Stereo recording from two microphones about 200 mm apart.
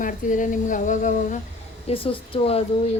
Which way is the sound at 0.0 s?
40° left (ahead or behind).